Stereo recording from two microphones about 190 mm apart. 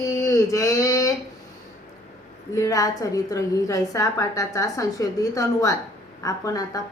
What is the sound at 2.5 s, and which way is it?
A woman's voice, 20° left (ahead or behind).